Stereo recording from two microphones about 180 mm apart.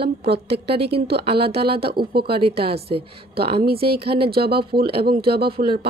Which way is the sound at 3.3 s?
60° right (ahead or behind).